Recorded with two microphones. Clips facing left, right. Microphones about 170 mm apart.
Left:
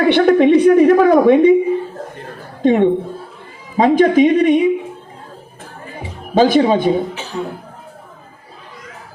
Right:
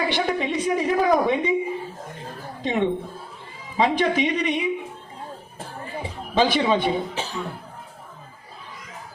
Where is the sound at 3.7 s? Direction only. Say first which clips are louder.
Left 10 dB; 45° left (ahead or behind).